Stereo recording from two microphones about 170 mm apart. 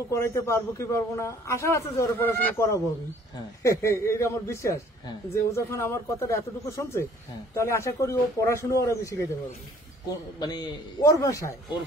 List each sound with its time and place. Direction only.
0.1 s a man's voice: 15° left (ahead or behind)
10.4 s a man's voice: 25° left (ahead or behind)